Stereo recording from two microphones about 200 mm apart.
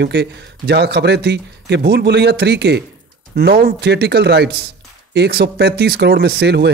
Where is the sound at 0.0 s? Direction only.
55° right (ahead or behind).